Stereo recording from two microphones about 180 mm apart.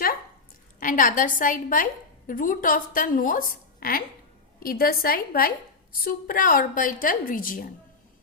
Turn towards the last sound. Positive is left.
turn(degrees=50)  # may be behind; listen again after turning